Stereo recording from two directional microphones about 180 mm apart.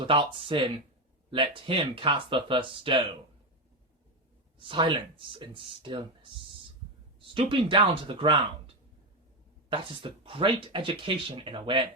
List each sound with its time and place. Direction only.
0.0 s speech: 30° right (ahead or behind)
4.6 s speech: 25° right (ahead or behind)